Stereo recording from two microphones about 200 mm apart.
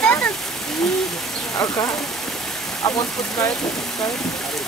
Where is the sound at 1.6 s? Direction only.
15° left (ahead or behind).